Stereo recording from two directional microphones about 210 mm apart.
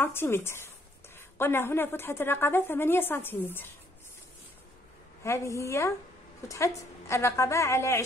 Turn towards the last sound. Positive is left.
turn(degrees=15)  # may be behind; listen again after turning